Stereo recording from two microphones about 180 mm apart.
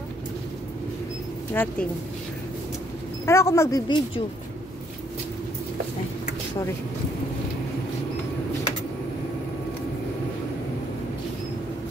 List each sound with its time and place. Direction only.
1.5 s speech: 10° left (ahead or behind)
3.3 s speech: 15° left (ahead or behind)